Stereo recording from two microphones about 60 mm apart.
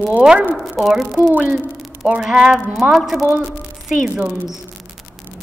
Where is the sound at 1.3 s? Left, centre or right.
Right.